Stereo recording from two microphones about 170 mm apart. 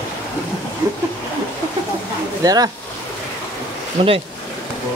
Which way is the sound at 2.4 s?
20° right (ahead or behind).